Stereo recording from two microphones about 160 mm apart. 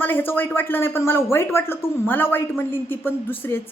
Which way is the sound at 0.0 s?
15° left (ahead or behind).